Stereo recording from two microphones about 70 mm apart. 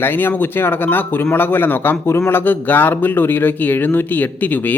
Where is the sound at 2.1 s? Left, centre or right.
Left.